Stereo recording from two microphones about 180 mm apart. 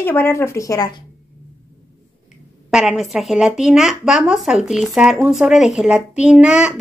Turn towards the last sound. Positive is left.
turn(degrees=-5)  # may be behind; listen again after turning